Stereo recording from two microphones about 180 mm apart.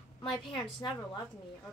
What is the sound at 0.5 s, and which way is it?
Speech, 25° left (ahead or behind).